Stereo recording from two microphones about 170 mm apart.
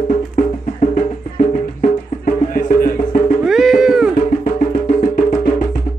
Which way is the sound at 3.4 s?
Centre (ahead or behind).